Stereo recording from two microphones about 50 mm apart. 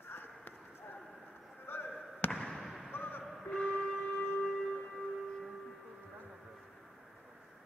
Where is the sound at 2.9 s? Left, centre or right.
Left.